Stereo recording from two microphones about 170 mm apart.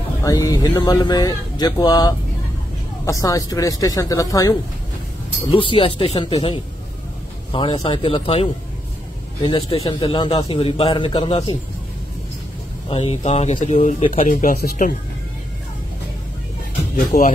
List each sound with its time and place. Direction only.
0.2 s speech: 20° left (ahead or behind)
5.5 s speech: 30° left (ahead or behind)
12.9 s speech: 35° left (ahead or behind); by 14.9 s 50° left (ahead or behind)
16.9 s speech: 55° left (ahead or behind)